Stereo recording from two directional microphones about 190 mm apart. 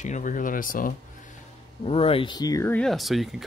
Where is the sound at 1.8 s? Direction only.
30° left (ahead or behind); by 3.4 s centre (ahead or behind).